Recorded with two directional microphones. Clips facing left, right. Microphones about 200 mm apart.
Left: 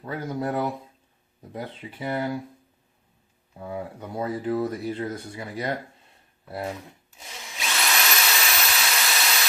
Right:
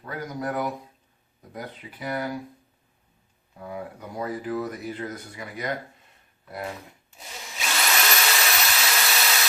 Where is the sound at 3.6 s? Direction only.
25° left (ahead or behind).